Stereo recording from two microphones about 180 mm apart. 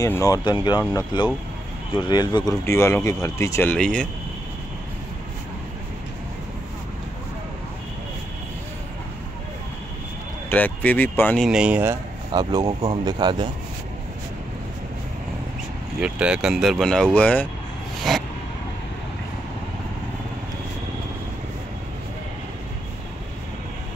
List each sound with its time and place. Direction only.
0.0 s speech: 20° left (ahead or behind)
3.7 s speech: 5° left (ahead or behind)
10.5 s speech: 10° left (ahead or behind)
11.4 s speech: 5° right (ahead or behind)
12.3 s speech: 25° right (ahead or behind)
16.0 s speech: 5° right (ahead or behind)
18.1 s a sound: centre (ahead or behind)